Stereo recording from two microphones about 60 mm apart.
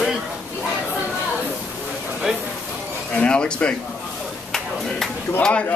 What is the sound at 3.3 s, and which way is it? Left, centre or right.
Speech, centre.